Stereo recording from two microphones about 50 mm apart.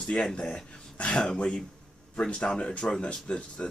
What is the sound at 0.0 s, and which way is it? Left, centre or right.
Speech, centre.